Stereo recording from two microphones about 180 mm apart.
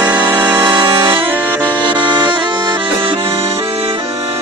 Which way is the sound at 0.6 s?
25° right (ahead or behind).